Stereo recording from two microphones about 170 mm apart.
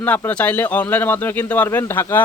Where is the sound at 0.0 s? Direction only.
10° left (ahead or behind).